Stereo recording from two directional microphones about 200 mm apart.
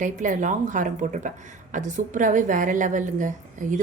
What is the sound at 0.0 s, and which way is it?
A woman's voice, 40° right (ahead or behind).